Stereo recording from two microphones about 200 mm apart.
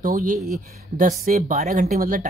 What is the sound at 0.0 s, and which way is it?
Speech, 40° right (ahead or behind).